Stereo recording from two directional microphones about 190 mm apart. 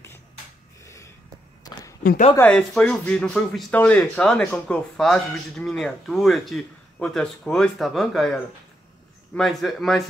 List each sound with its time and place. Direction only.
0.8 s gasp: 15° left (ahead or behind)
1.6 s a sound: 20° left (ahead or behind)
2.3 s speech: 5° left (ahead or behind)